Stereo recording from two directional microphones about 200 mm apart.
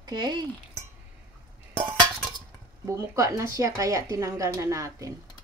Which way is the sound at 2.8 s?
15° right (ahead or behind).